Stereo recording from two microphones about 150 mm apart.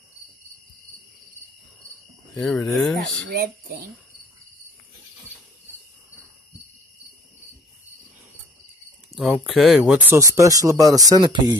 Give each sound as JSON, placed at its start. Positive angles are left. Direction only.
{"t": 2.3, "sound": "speech", "side_deg": 5}
{"t": 3.3, "sound": "speech", "side_deg": -90}
{"t": 9.1, "sound": "speech", "side_deg": 0}